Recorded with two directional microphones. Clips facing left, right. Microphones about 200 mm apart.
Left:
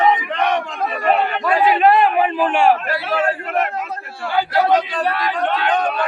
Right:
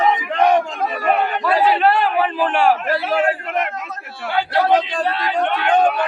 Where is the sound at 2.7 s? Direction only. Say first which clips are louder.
Even; 10° right (ahead or behind).